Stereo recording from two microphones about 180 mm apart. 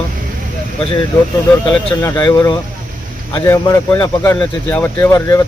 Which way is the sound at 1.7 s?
15° left (ahead or behind).